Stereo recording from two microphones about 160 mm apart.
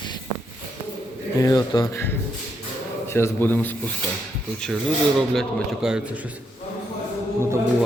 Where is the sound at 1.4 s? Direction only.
20° left (ahead or behind).